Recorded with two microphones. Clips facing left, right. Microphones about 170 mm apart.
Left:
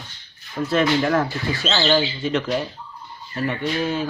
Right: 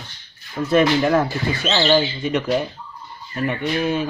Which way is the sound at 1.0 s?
20° right (ahead or behind).